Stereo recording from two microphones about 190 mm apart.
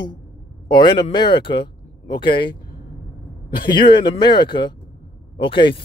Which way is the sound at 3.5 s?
25° left (ahead or behind).